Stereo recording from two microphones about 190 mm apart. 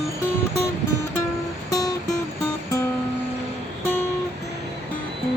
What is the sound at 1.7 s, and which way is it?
Music, 20° left (ahead or behind).